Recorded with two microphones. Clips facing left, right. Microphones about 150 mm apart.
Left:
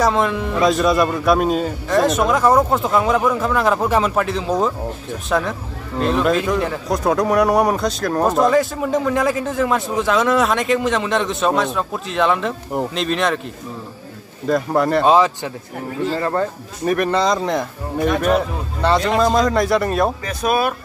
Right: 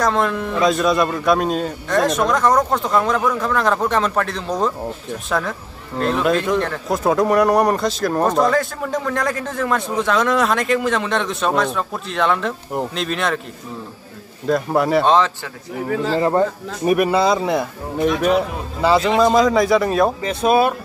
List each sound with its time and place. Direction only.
0.0 s speech: centre (ahead or behind)
14.5 s speech: centre (ahead or behind)
15.0 s speech: 10° left (ahead or behind)
16.2 s speech: 15° right (ahead or behind); by 20.1 s centre (ahead or behind)
20.2 s speech: 25° right (ahead or behind)